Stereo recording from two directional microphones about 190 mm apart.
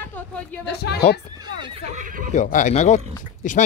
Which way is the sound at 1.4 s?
25° right (ahead or behind).